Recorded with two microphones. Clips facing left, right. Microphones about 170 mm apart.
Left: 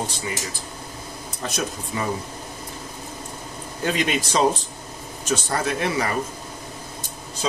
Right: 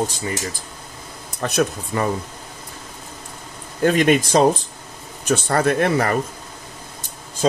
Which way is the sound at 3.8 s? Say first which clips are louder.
Right 8 dB; 50° right (ahead or behind).